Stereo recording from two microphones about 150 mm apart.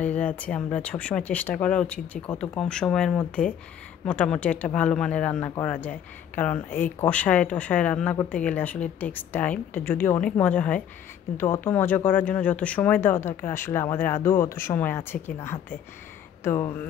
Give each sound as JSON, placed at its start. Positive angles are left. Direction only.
{"t": 0.0, "sound": "speech", "side_deg": 10}